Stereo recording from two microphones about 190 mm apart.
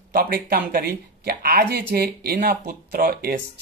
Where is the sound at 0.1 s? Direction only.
50° right (ahead or behind).